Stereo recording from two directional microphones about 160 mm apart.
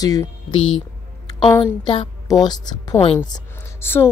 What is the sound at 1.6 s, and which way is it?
A woman's voice, 35° left (ahead or behind).